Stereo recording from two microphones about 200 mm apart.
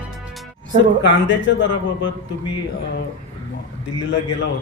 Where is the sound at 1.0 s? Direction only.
65° left (ahead or behind).